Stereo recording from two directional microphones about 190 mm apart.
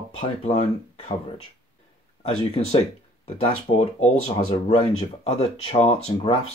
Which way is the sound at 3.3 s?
35° left (ahead or behind).